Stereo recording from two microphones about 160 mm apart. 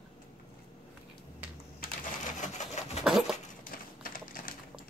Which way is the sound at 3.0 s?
5° right (ahead or behind).